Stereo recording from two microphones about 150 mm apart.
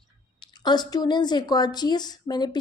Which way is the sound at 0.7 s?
25° left (ahead or behind).